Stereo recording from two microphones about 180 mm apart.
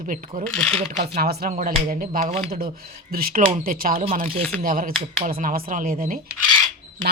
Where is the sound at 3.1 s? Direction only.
55° right (ahead or behind).